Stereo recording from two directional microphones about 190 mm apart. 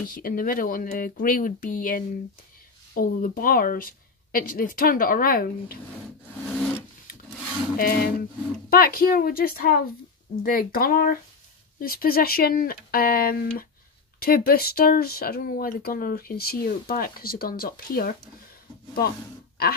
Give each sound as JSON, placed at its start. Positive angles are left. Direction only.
{"t": 0.0, "sound": "speech", "side_deg": 50}
{"t": 6.4, "sound": "rub", "side_deg": 5}
{"t": 7.7, "sound": "speech", "side_deg": 50}